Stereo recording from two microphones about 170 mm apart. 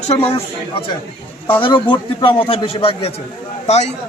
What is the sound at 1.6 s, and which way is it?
A man's voice, 30° left (ahead or behind).